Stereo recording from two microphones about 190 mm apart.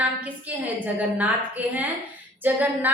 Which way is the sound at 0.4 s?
10° right (ahead or behind).